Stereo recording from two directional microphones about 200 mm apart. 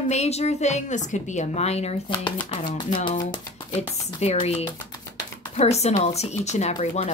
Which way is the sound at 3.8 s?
30° left (ahead or behind).